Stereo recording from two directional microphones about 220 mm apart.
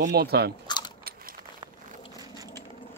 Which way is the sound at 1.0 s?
40° right (ahead or behind).